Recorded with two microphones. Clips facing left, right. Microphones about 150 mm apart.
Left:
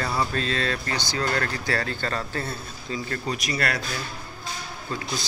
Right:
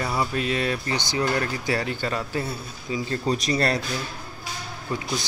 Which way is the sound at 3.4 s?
30° right (ahead or behind).